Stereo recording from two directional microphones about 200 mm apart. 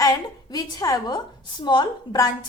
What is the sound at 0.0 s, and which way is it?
A woman's voice, 20° left (ahead or behind).